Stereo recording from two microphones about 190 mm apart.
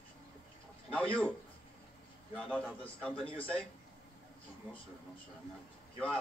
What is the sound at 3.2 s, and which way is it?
Speech, 30° left (ahead or behind).